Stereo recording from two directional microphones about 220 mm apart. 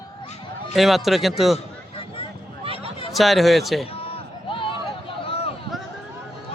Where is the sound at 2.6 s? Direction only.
25° right (ahead or behind).